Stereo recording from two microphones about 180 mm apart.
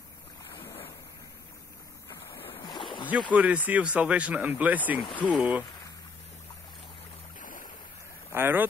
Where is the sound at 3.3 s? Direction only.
5° right (ahead or behind).